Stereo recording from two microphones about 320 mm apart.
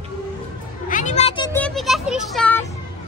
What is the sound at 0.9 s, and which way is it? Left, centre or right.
Speech, left.